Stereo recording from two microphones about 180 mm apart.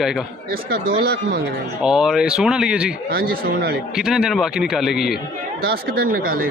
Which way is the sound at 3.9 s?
5° right (ahead or behind).